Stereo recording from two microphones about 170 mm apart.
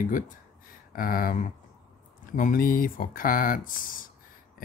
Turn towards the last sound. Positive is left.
turn(degrees=55)  # may be behind; listen again after turning